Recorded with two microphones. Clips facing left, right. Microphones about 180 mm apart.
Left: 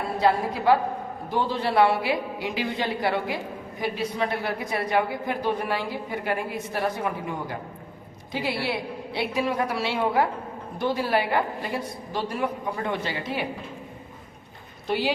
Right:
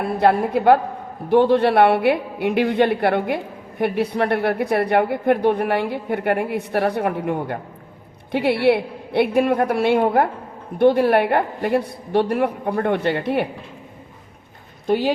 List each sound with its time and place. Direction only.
0.2 s a woman's voice: 60° right (ahead or behind)
14.8 s speech: 50° right (ahead or behind)